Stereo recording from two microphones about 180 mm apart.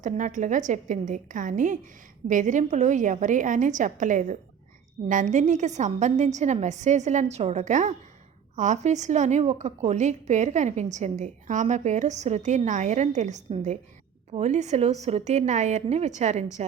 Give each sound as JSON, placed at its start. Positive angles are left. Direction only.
{"t": 0.0, "sound": "a woman's voice", "side_deg": -45}